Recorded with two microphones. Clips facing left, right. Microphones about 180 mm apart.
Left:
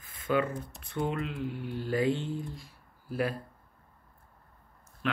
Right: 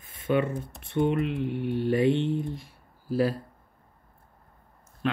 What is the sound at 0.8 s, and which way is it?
Speech, 25° right (ahead or behind).